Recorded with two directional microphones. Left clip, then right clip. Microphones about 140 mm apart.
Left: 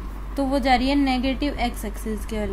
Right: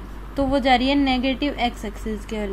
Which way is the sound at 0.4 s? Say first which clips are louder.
Right 2 dB; 10° right (ahead or behind).